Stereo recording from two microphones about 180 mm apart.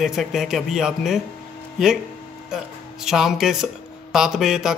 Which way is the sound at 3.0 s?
Centre (ahead or behind).